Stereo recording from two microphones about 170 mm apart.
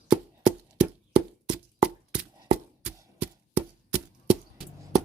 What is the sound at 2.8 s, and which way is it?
Chop, 10° right (ahead or behind).